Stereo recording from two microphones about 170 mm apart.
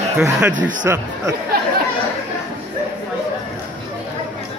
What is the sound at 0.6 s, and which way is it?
Speech, 50° right (ahead or behind).